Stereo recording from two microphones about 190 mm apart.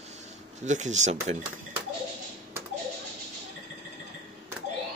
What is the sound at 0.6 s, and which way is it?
Speech, 40° right (ahead or behind).